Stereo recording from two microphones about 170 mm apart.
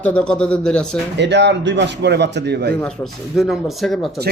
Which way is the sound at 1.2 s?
90° right.